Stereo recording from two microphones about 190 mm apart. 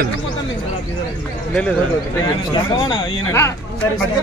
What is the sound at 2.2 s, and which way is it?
Speech, 25° left (ahead or behind).